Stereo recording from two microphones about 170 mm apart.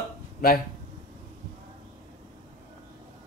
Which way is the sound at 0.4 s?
60° left (ahead or behind).